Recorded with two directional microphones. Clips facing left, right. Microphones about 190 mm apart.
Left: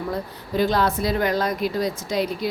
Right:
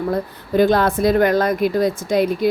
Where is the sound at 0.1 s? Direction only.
55° right (ahead or behind).